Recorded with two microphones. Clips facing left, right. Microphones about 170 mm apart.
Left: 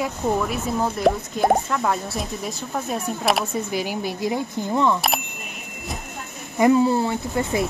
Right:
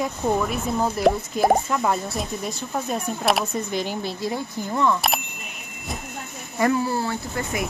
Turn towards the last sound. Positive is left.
turn(degrees=25)  # may be behind; listen again after turning